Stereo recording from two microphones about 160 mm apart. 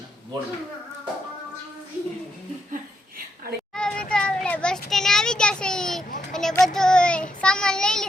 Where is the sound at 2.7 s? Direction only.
65° right (ahead or behind).